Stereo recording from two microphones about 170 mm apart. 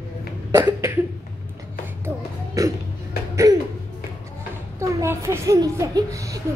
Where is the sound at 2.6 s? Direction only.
20° right (ahead or behind).